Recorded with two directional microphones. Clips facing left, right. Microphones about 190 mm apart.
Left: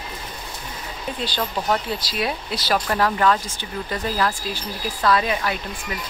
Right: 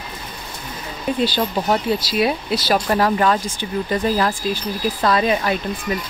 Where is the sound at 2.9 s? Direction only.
20° right (ahead or behind).